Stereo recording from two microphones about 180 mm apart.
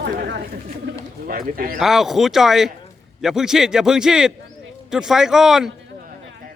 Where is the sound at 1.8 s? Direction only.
Centre (ahead or behind).